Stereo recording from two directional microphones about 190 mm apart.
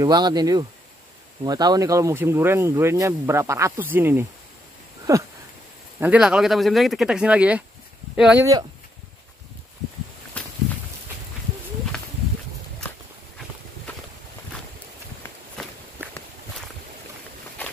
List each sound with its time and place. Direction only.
0.0 s speech: 20° right (ahead or behind)
5.9 s speech: 5° right (ahead or behind)
10.4 s walk: 5° left (ahead or behind)
11.9 s a sound: 5° left (ahead or behind)